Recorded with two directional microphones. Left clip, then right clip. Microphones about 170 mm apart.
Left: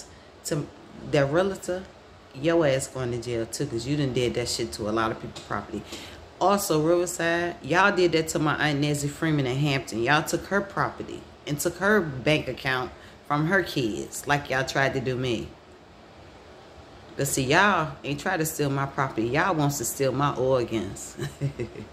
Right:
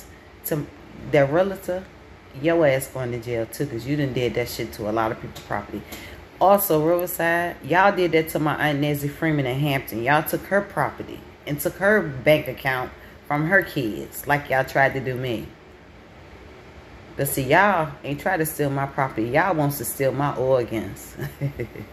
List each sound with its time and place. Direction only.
0.5 s a woman's voice: 15° left (ahead or behind)
17.2 s a woman's voice: 15° left (ahead or behind)